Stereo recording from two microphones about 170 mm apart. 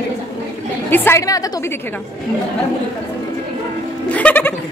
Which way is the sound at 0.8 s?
10° left (ahead or behind).